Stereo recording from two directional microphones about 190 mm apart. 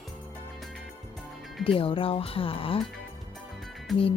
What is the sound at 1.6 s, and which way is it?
Speech, 30° left (ahead or behind).